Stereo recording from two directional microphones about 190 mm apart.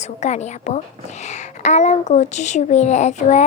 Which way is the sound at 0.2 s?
40° left (ahead or behind).